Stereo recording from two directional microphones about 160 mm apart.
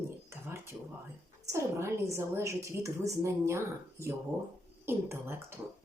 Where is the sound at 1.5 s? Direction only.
15° right (ahead or behind).